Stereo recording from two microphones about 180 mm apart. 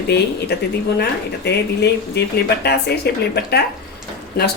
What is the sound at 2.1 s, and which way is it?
Speech, 65° left (ahead or behind).